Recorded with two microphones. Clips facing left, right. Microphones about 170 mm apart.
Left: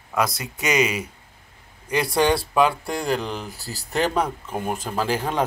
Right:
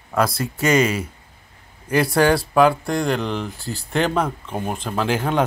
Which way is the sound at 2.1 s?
Centre (ahead or behind).